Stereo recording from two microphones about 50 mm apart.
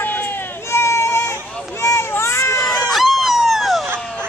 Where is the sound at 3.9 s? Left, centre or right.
Centre.